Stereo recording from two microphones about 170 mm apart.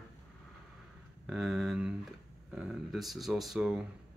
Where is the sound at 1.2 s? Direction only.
Centre (ahead or behind).